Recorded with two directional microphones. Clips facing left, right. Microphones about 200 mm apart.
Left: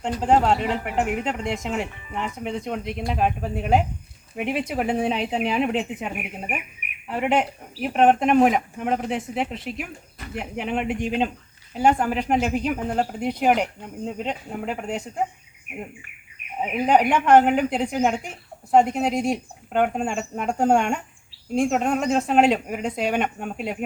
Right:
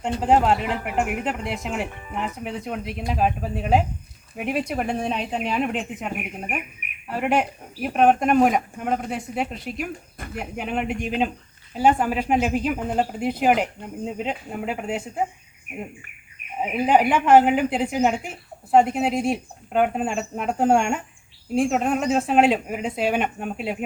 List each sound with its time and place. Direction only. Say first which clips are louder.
0.2 s speech: even; 5° right (ahead or behind)
2.0 s speech: right 1 dB; 50° right (ahead or behind)
2.4 s speech: left 2 dB; 5° right (ahead or behind)
7.2 s speech: even; centre (ahead or behind)
16.6 s speech: even; 5° right (ahead or behind)